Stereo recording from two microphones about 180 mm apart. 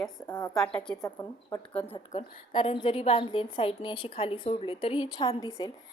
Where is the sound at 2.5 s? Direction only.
25° left (ahead or behind).